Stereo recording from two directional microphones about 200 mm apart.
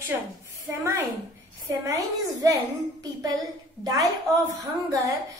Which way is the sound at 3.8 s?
15° right (ahead or behind).